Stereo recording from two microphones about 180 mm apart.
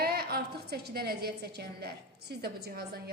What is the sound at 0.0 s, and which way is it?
A woman's voice, 60° right (ahead or behind).